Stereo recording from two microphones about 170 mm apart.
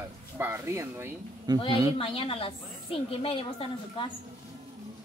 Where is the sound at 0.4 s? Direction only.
15° right (ahead or behind).